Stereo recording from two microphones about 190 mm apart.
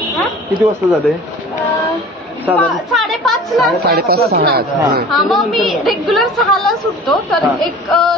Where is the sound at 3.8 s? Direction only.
55° right (ahead or behind).